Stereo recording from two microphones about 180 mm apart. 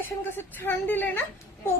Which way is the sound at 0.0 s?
10° left (ahead or behind).